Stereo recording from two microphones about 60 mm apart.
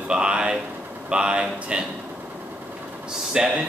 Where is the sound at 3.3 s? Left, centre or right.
Centre.